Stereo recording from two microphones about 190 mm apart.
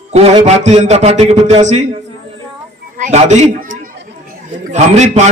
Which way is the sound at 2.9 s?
40° right (ahead or behind).